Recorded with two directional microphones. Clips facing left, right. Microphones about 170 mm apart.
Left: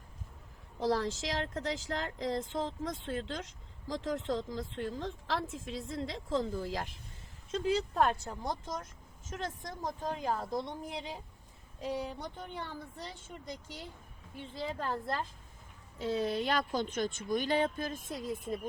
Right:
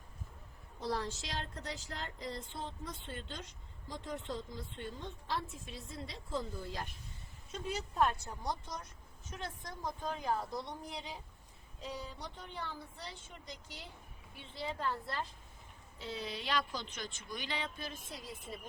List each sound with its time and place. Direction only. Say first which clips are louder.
0.8 s speech: left 7 dB; 90° left
7.5 s speech: left 8 dB; 75° left (ahead or behind); by 8.7 s 50° left (ahead or behind)
9.8 s speech: left 3 dB; 45° left (ahead or behind)
11.8 s speech: left 7 dB; 55° left (ahead or behind)